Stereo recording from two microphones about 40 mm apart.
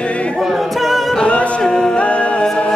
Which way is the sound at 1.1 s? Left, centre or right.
Left.